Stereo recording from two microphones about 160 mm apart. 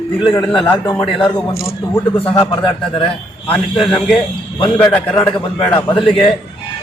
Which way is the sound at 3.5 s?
30° left (ahead or behind).